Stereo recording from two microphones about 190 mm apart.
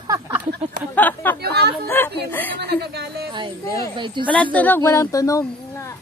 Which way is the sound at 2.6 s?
60° right (ahead or behind).